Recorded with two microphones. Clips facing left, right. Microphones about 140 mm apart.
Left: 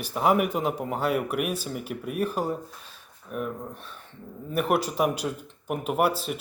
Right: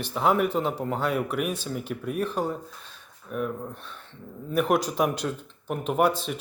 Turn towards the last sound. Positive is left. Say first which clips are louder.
# right 1 dB
turn(degrees=5)  # may be behind; listen again after turning